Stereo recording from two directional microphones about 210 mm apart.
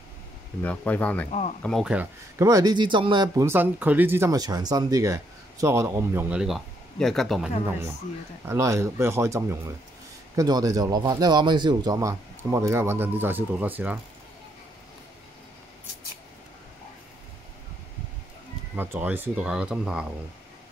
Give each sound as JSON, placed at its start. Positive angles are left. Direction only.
{"t": 0.6, "sound": "speech", "side_deg": 5}
{"t": 2.4, "sound": "speech", "side_deg": -20}
{"t": 8.5, "sound": "speech", "side_deg": -15}
{"t": 18.8, "sound": "speech", "side_deg": -10}